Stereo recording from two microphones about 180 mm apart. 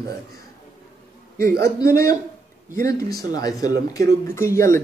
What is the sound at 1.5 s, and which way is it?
Speech, 15° left (ahead or behind).